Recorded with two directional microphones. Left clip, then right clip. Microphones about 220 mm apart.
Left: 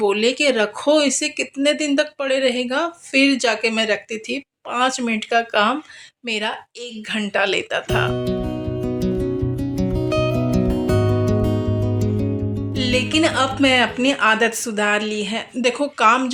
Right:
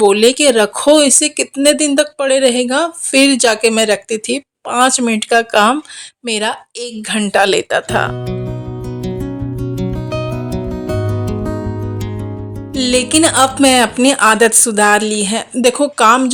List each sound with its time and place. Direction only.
0.0 s speech: 45° right (ahead or behind)
10.1 s music: centre (ahead or behind)
12.7 s speech: 45° right (ahead or behind)